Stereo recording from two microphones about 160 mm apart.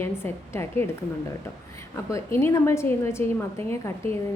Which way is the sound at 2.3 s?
15° left (ahead or behind).